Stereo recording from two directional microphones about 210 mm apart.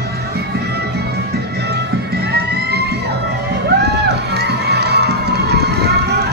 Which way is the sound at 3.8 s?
50° right (ahead or behind).